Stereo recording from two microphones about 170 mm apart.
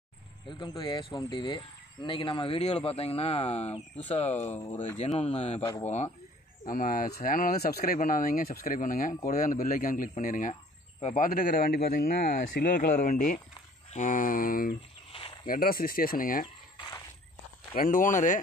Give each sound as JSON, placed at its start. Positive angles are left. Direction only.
{"t": 0.5, "sound": "speech", "side_deg": 30}
{"t": 6.7, "sound": "speech", "side_deg": 55}
{"t": 11.2, "sound": "speech", "side_deg": 50}
{"t": 17.7, "sound": "speech", "side_deg": 50}